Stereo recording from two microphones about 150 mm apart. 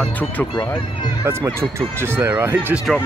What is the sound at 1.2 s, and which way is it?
Speech, 15° right (ahead or behind).